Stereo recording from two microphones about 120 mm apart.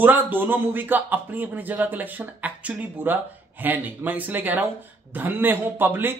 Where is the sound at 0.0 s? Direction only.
15° right (ahead or behind).